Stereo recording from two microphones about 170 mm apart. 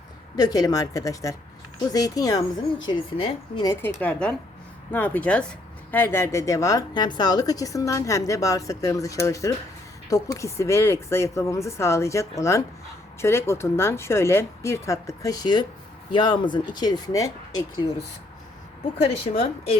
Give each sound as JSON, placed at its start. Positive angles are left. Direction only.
{"t": 0.3, "sound": "speech", "side_deg": 20}
{"t": 3.7, "sound": "speech", "side_deg": 15}
{"t": 19.1, "sound": "a woman's voice", "side_deg": 35}